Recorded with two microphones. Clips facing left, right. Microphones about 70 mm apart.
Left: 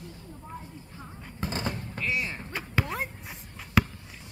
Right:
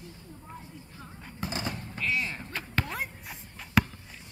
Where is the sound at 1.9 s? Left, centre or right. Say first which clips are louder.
Right 2 dB; centre.